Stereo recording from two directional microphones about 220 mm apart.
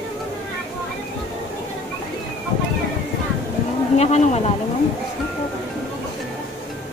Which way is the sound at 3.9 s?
30° left (ahead or behind).